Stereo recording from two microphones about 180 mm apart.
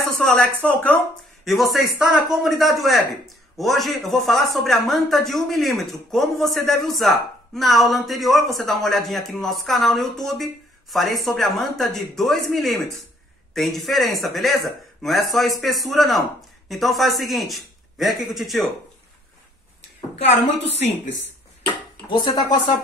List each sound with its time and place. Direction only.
0.2 s speech: 5° left (ahead or behind)
13.5 s a sound: centre (ahead or behind)
13.8 s speech: centre (ahead or behind)
22.1 s speech: 20° left (ahead or behind)